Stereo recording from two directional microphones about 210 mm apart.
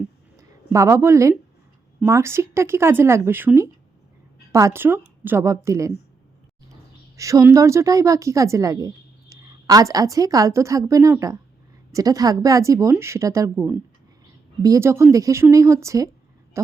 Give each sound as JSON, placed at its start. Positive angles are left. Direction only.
{"t": 0.3, "sound": "speech", "side_deg": -15}
{"t": 7.2, "sound": "a woman's voice", "side_deg": -15}